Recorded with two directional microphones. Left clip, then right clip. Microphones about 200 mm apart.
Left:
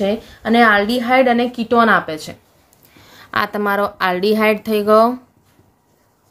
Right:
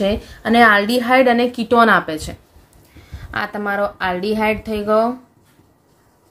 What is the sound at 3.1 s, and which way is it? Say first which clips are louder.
A woman's voice: left 4 dB; 40° left (ahead or behind).